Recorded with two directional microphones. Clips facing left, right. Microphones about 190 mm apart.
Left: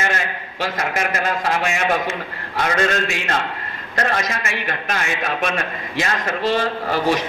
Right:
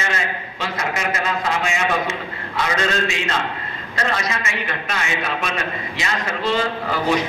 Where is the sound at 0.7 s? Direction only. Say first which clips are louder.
Even; 55° left (ahead or behind).